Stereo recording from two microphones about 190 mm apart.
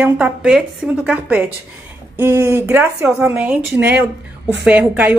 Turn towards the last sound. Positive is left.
turn(degrees=-10)  # may be behind; listen again after turning